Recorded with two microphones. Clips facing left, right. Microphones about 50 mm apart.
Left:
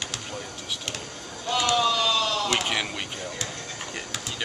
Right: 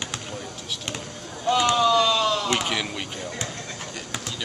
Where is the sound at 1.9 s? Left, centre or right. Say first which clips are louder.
Right 4 dB; right.